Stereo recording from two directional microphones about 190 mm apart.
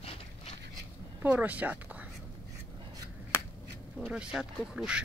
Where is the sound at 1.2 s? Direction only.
10° right (ahead or behind).